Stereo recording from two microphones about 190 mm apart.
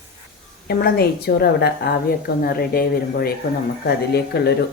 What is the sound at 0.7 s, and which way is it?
A woman's voice, 55° left (ahead or behind).